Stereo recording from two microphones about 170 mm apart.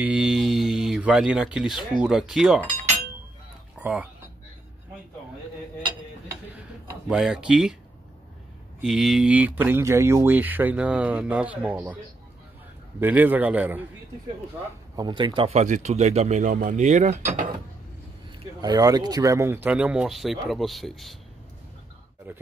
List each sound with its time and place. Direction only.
0.0 s speech: 5° right (ahead or behind)
3.7 s speech: 10° right (ahead or behind)
7.1 s speech: 5° right (ahead or behind)
8.8 s speech: centre (ahead or behind)
13.0 s speech: 10° right (ahead or behind)
15.0 s speech: 25° right (ahead or behind); by 17.5 s 45° right (ahead or behind)
18.6 s speech: 25° right (ahead or behind); by 21.2 s centre (ahead or behind)